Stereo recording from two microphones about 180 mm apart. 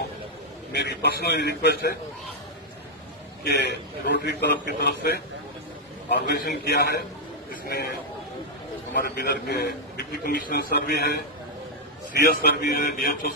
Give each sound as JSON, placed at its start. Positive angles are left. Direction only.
{"t": 0.7, "sound": "a man's voice", "side_deg": 65}
{"t": 3.6, "sound": "a man's voice", "side_deg": 65}
{"t": 9.0, "sound": "a man's voice", "side_deg": 65}
{"t": 12.3, "sound": "a man's voice", "side_deg": 60}